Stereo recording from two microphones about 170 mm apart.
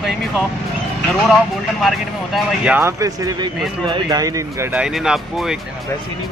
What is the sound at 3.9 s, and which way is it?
Speech, 20° right (ahead or behind).